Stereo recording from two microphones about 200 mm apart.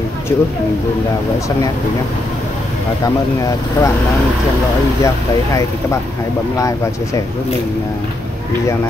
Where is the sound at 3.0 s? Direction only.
15° left (ahead or behind).